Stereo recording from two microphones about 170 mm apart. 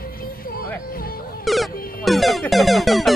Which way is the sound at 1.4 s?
Centre (ahead or behind).